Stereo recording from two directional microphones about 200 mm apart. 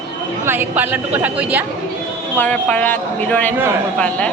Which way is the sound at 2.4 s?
5° left (ahead or behind).